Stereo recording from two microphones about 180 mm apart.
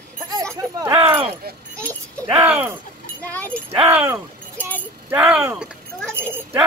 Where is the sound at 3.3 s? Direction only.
10° left (ahead or behind).